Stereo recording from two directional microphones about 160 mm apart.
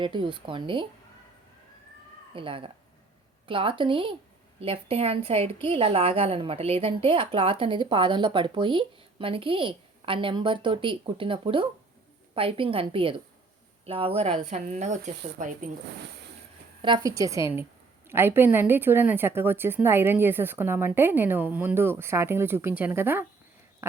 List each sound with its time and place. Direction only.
0.0 s a woman's voice: 30° right (ahead or behind)
2.3 s a woman's voice: 35° right (ahead or behind); by 15.7 s 55° right (ahead or behind)
16.8 s a woman's voice: 25° right (ahead or behind)
23.8 s a sound: 15° right (ahead or behind)